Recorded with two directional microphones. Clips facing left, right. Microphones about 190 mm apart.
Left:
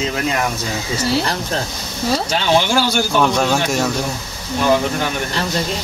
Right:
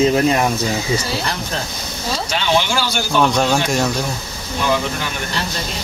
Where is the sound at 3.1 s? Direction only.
5° left (ahead or behind).